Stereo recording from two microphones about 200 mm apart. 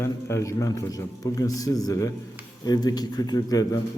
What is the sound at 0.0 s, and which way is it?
A man's voice, 15° left (ahead or behind).